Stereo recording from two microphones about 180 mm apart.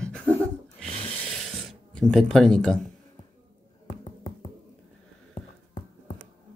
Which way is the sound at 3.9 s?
45° left (ahead or behind).